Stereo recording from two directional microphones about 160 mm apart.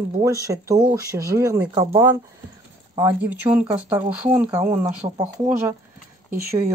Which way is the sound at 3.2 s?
10° right (ahead or behind).